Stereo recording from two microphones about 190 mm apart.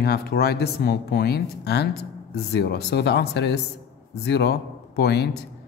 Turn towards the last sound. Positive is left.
turn(degrees=60)  # may be behind; listen again after turning